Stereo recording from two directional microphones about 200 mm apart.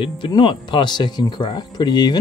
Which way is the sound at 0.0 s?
25° left (ahead or behind).